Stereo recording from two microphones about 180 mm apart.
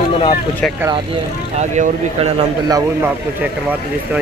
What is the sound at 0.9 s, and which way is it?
Speech, 35° right (ahead or behind).